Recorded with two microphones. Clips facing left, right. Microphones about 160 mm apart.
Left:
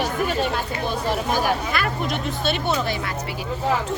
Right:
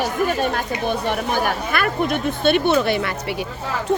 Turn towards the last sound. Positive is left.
turn(degrees=-65)  # may be behind; listen again after turning